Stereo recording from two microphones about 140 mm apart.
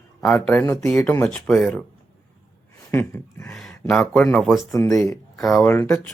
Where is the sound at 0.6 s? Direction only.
20° left (ahead or behind); by 1.8 s 5° left (ahead or behind).